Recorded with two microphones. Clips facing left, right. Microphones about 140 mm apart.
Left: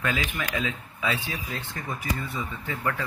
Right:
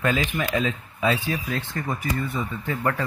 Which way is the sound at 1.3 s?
60° right (ahead or behind).